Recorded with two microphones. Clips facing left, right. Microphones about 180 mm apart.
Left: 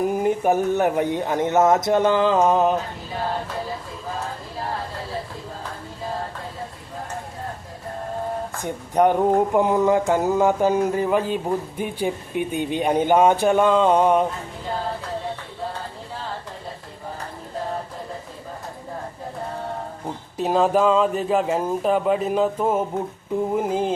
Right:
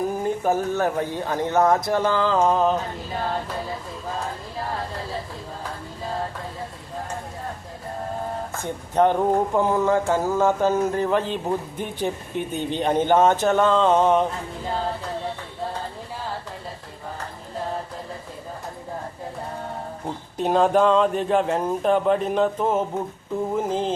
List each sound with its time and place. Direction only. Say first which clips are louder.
0.1 s mantra: left 3 dB; 15° left (ahead or behind)
8.6 s mantra: left 1 dB; 15° left (ahead or behind)
20.3 s a man's voice: even; centre (ahead or behind)
23.6 s mantra: even; 10° left (ahead or behind)